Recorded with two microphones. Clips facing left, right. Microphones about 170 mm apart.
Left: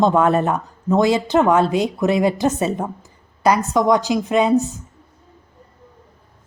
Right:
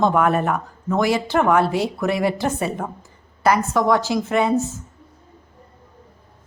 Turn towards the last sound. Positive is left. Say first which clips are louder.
# left 3 dB
turn(degrees=15)  # may be behind; listen again after turning